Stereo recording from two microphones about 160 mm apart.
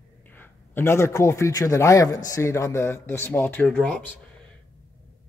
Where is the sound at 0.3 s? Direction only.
15° left (ahead or behind).